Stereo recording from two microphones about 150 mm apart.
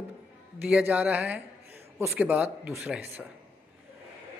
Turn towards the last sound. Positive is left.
turn(degrees=-10)  # may be behind; listen again after turning